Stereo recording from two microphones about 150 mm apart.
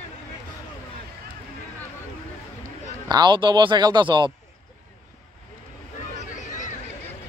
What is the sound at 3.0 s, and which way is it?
Speech, 30° right (ahead or behind).